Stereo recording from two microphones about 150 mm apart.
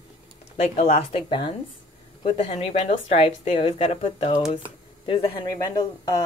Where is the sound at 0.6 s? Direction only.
45° left (ahead or behind).